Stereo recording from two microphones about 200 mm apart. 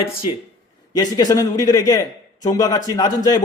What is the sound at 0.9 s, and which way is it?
A man's voice, 20° left (ahead or behind).